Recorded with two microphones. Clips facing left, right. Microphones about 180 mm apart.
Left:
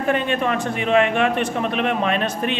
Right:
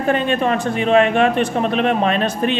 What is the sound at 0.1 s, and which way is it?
Speech, 35° right (ahead or behind).